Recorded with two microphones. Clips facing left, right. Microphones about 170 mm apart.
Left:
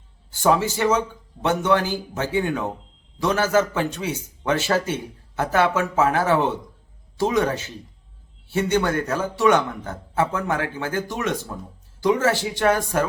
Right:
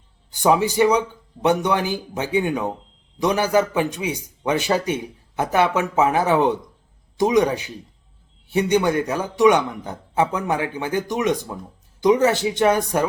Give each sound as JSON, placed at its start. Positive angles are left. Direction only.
{"t": 0.3, "sound": "a man's voice", "side_deg": -15}